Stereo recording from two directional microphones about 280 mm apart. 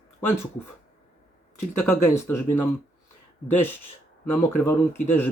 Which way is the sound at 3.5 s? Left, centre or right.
Centre.